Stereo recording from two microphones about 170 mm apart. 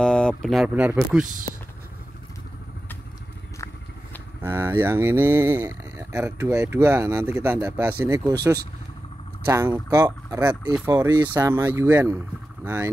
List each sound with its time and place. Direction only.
0.0 s speech: 5° left (ahead or behind)
4.4 s speech: 15° right (ahead or behind)
9.5 s speech: 20° right (ahead or behind)